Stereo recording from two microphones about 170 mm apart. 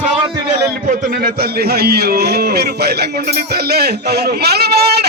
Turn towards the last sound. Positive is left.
turn(degrees=-70)  # may be behind; listen again after turning